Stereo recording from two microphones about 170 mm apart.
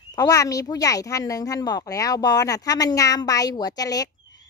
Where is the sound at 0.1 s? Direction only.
20° left (ahead or behind).